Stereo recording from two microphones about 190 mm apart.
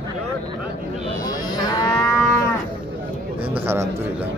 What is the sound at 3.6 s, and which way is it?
Speech, 15° right (ahead or behind).